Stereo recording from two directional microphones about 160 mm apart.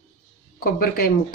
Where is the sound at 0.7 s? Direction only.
70° left (ahead or behind).